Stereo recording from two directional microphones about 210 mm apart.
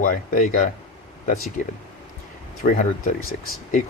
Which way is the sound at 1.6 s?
40° left (ahead or behind).